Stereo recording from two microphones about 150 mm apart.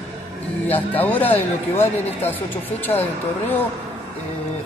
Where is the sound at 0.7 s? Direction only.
10° left (ahead or behind).